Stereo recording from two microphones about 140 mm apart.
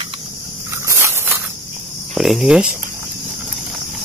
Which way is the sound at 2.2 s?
Centre (ahead or behind).